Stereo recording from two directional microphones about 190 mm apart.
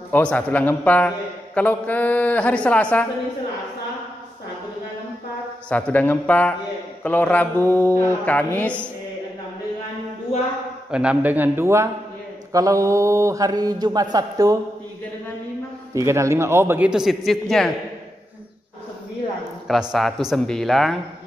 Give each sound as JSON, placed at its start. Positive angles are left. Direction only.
{"t": 0.1, "sound": "a man's voice", "side_deg": 5}
{"t": 5.7, "sound": "a man's voice", "side_deg": 5}
{"t": 10.9, "sound": "speech", "side_deg": -5}
{"t": 15.9, "sound": "speech", "side_deg": -15}
{"t": 19.7, "sound": "speech", "side_deg": 0}